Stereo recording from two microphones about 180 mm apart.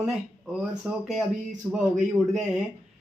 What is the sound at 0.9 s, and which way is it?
Speech, 5° right (ahead or behind).